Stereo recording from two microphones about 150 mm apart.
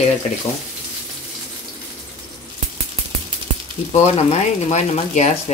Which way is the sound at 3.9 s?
50° left (ahead or behind).